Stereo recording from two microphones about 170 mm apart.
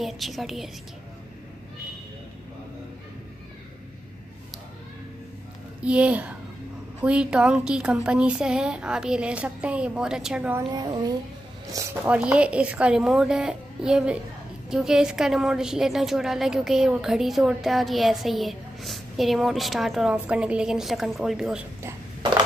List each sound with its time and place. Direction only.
0.0 s a woman's voice: centre (ahead or behind)
5.8 s a woman's voice: 5° right (ahead or behind)
10.7 s speech: 25° right (ahead or behind)
11.7 s a woman's voice: 10° right (ahead or behind)